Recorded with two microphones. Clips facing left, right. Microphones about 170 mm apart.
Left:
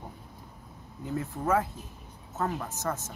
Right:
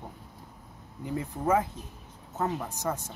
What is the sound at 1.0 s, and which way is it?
Speech, 15° right (ahead or behind).